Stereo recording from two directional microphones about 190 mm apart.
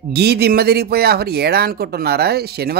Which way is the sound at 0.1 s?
60° right (ahead or behind).